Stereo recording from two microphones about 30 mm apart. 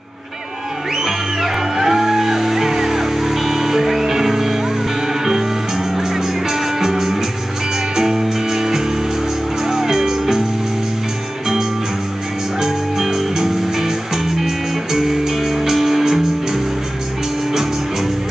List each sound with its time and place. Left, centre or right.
0.9 s music: centre
12.5 s music: centre